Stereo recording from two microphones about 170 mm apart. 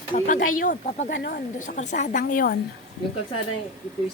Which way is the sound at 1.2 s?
55° left (ahead or behind).